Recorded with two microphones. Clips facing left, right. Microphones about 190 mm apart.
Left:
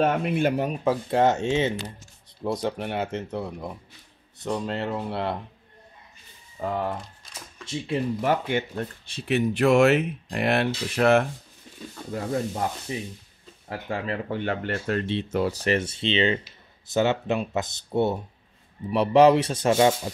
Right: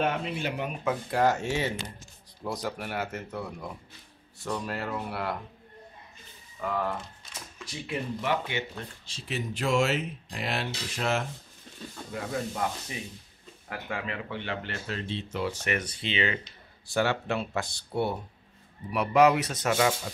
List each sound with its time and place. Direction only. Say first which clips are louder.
0.0 s speech: left 7 dB; 55° left (ahead or behind); by 5.4 s 25° left (ahead or behind)
6.6 s speech: left 3 dB; 25° left (ahead or behind)
8.2 s speech: left 6 dB; 45° left (ahead or behind)
12.1 s speech: left 6 dB; 35° left (ahead or behind)